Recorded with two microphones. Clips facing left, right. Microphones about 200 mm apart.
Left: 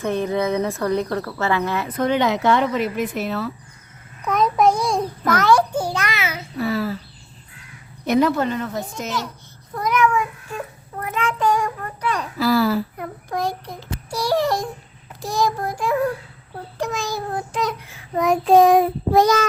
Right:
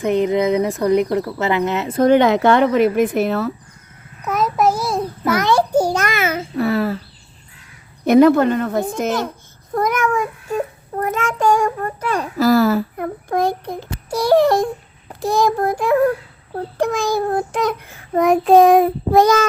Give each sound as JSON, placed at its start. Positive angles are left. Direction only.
{"t": 0.0, "sound": "speech", "side_deg": -15}
{"t": 2.0, "sound": "child singing", "side_deg": -50}
{"t": 4.2, "sound": "a sound", "side_deg": -5}
{"t": 5.7, "sound": "a child's voice", "side_deg": -45}
{"t": 8.0, "sound": "speech", "side_deg": -55}
{"t": 15.2, "sound": "child singing", "side_deg": -60}